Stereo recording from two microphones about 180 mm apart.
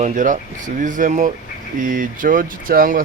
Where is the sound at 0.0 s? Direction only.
45° right (ahead or behind).